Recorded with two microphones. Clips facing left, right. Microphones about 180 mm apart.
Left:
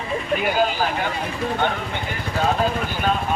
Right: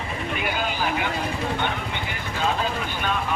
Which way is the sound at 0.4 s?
40° left (ahead or behind).